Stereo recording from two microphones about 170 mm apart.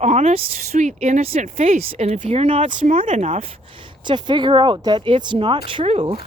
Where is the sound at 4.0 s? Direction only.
25° right (ahead or behind).